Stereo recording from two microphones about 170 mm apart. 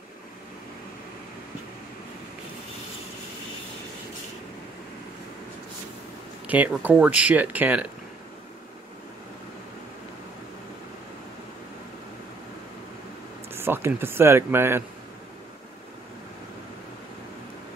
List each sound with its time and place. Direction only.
6.4 s speech: 10° right (ahead or behind)
13.5 s speech: 15° right (ahead or behind)